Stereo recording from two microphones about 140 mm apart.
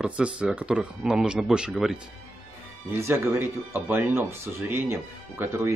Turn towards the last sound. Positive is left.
turn(degrees=-15)  # may be behind; listen again after turning